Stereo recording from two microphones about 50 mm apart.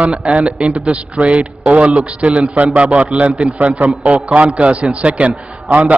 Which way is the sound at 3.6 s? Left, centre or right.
Right.